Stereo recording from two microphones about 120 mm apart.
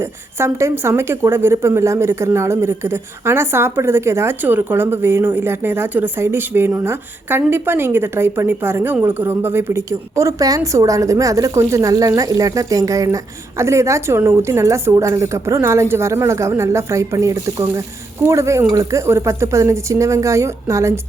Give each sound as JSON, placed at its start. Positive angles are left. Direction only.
{"t": 0.0, "sound": "a woman's voice", "side_deg": -20}